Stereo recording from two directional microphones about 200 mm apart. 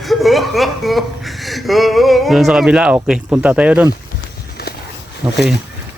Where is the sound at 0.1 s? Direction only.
Centre (ahead or behind).